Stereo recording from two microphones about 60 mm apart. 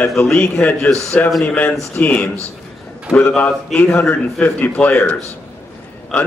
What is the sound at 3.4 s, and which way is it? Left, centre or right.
A man's voice, left.